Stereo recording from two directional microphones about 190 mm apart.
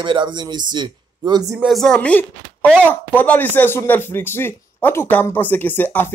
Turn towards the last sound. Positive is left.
turn(degrees=10)  # may be behind; listen again after turning